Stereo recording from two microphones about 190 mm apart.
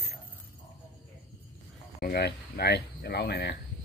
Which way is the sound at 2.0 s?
55° left (ahead or behind).